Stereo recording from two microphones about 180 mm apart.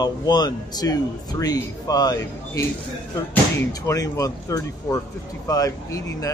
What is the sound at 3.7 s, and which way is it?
A man's voice, 20° left (ahead or behind).